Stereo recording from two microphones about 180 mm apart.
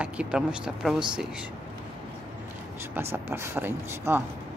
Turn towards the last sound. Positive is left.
turn(degrees=-10)  # may be behind; listen again after turning